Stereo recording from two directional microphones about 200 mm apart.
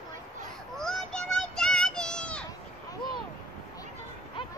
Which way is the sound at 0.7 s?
Centre (ahead or behind).